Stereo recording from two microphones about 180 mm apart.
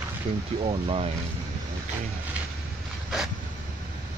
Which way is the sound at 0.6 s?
30° right (ahead or behind).